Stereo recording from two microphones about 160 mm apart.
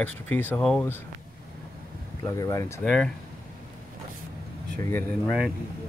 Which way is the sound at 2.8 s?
Centre (ahead or behind).